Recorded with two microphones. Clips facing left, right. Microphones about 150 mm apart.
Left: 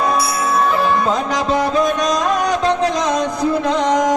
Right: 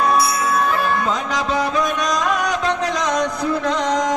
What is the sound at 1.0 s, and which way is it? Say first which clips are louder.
Music: left 4 dB; 25° left (ahead or behind).